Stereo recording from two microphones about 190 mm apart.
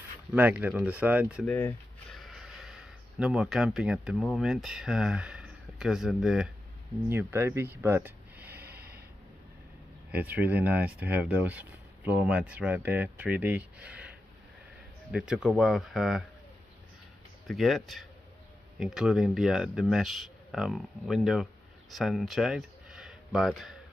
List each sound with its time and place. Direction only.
0.3 s speech: 10° right (ahead or behind)
1.4 s speech: 10° left (ahead or behind); by 8.5 s 10° right (ahead or behind)
8.5 s snort: 55° right (ahead or behind)
10.1 s speech: 10° right (ahead or behind)
17.5 s speech: centre (ahead or behind)